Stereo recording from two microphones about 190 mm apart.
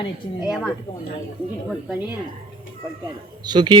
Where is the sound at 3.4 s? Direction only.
25° right (ahead or behind).